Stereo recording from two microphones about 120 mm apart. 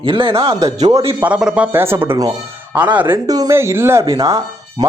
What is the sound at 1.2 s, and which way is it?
Speech, 10° right (ahead or behind).